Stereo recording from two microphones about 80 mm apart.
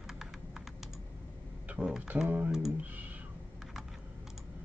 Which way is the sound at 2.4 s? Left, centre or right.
Centre.